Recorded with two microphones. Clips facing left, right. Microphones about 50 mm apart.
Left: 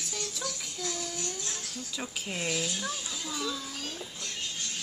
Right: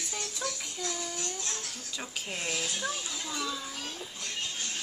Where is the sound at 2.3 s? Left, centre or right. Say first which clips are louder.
Left 2 dB; centre.